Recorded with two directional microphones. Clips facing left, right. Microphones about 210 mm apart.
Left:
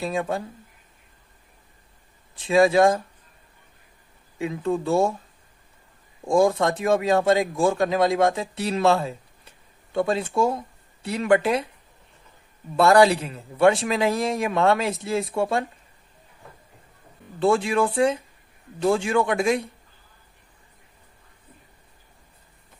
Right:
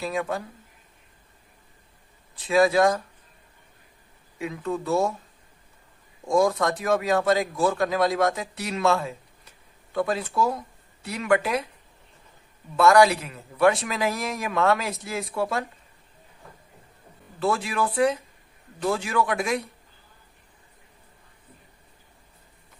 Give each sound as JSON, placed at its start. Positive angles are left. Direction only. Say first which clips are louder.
{"t": 0.0, "sound": "a man's voice", "louder": "left 2 dB", "side_deg": 30}
{"t": 2.3, "sound": "a man's voice", "louder": "left 2 dB", "side_deg": 25}
{"t": 4.4, "sound": "a man's voice", "louder": "left 4 dB", "side_deg": 30}
{"t": 6.2, "sound": "a man's voice", "louder": "left 2 dB", "side_deg": 30}
{"t": 12.7, "sound": "a man's voice", "louder": "left 1 dB", "side_deg": 30}
{"t": 17.4, "sound": "a man's voice", "louder": "left 5 dB", "side_deg": 25}